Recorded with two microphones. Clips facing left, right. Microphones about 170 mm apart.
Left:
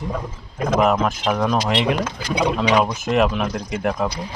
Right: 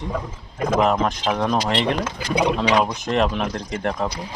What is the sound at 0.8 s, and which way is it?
Speech, 5° left (ahead or behind).